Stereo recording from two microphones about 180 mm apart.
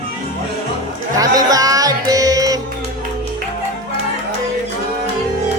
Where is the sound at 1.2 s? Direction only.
20° right (ahead or behind).